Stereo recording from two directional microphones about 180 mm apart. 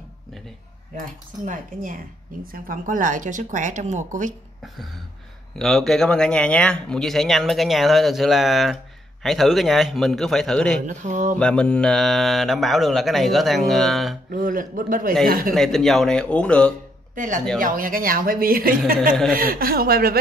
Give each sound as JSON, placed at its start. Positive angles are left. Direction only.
{"t": 0.9, "sound": "speech", "side_deg": -45}
{"t": 5.6, "sound": "speech", "side_deg": 0}
{"t": 10.9, "sound": "speech", "side_deg": -45}
{"t": 11.3, "sound": "speech", "side_deg": 5}
{"t": 14.3, "sound": "speech", "side_deg": -50}
{"t": 15.5, "sound": "speech", "side_deg": 0}
{"t": 17.1, "sound": "a woman's voice", "side_deg": -45}